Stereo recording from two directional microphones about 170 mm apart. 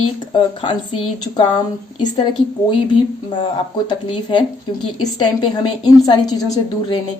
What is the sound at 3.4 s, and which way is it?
A woman's voice, 30° left (ahead or behind).